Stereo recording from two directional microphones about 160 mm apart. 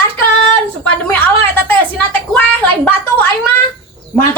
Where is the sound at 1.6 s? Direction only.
10° left (ahead or behind).